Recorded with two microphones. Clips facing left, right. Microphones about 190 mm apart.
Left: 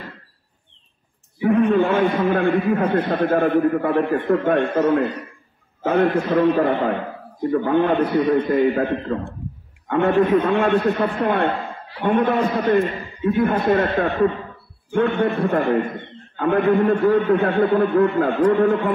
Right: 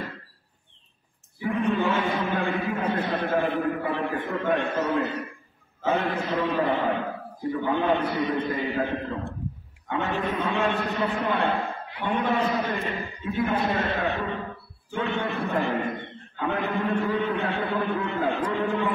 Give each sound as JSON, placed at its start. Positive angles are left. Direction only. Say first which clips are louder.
{"t": 1.4, "sound": "a man's voice", "louder": "left 8 dB", "side_deg": 55}
{"t": 5.9, "sound": "a man's voice", "louder": "left 8 dB", "side_deg": 55}